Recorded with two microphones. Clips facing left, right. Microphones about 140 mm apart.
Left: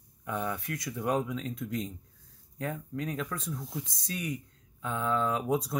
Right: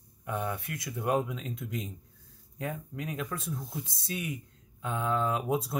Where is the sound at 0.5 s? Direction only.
5° right (ahead or behind).